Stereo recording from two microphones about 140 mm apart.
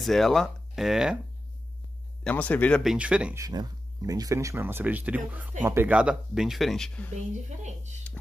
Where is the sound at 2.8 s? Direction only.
5° right (ahead or behind).